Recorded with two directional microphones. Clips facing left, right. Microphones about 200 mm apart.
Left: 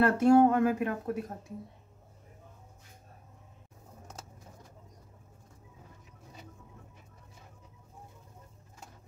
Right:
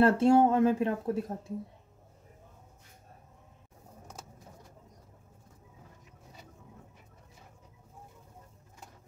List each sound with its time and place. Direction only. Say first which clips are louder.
0.0 s speech: even; 25° right (ahead or behind)